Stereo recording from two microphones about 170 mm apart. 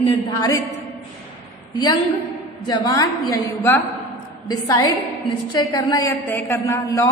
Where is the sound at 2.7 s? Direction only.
20° left (ahead or behind).